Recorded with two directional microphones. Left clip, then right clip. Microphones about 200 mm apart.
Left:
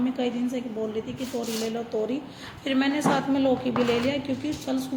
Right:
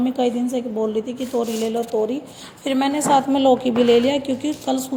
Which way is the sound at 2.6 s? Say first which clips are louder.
Right 4 dB; 30° right (ahead or behind).